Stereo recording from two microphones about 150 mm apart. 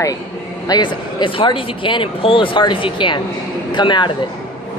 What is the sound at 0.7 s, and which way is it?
Speech, 30° left (ahead or behind).